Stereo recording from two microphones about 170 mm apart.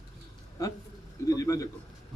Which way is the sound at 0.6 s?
20° left (ahead or behind).